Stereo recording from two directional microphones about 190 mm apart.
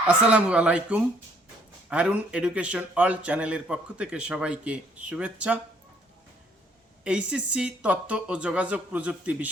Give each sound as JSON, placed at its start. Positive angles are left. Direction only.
{"t": 0.1, "sound": "a man's voice", "side_deg": -5}
{"t": 7.0, "sound": "a man's voice", "side_deg": -5}